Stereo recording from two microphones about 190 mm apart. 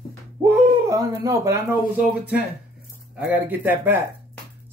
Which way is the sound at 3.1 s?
10° right (ahead or behind).